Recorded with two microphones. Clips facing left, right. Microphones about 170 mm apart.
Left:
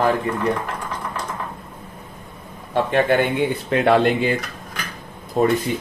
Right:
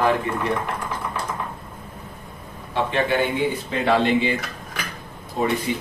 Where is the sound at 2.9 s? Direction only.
55° left (ahead or behind).